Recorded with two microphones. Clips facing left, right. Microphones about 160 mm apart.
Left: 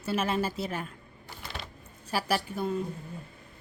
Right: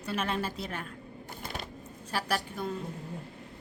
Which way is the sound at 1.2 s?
45° right (ahead or behind).